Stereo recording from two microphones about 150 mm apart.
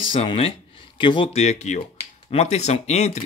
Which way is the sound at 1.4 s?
50° left (ahead or behind).